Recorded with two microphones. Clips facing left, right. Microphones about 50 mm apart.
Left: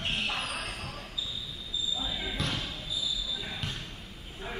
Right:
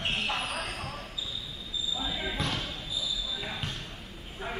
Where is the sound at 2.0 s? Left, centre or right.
Centre.